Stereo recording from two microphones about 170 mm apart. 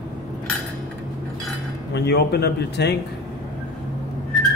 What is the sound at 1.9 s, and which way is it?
A man's voice, 75° left (ahead or behind).